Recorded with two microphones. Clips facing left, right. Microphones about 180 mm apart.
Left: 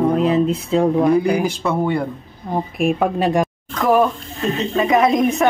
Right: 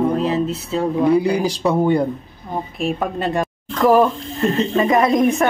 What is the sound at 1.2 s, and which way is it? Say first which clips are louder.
Speech: even; 30° right (ahead or behind).